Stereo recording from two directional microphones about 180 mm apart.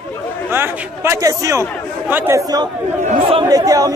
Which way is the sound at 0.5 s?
15° right (ahead or behind).